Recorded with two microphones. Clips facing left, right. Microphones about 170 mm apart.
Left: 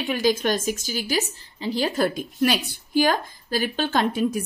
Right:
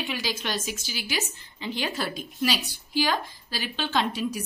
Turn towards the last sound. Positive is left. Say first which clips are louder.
# left 5 dB
turn(degrees=50)  # may be behind; listen again after turning